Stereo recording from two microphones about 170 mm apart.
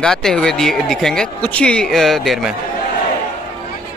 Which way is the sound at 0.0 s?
5° left (ahead or behind).